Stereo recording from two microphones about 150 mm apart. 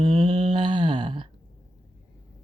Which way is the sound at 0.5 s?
30° right (ahead or behind).